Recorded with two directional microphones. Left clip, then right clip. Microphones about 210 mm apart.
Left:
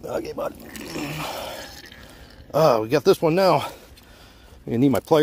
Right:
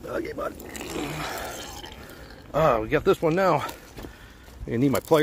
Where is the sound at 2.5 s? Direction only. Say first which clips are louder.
Left 4 dB; 40° left (ahead or behind).